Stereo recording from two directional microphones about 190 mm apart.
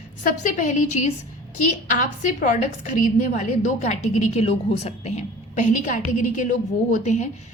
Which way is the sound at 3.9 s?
40° left (ahead or behind).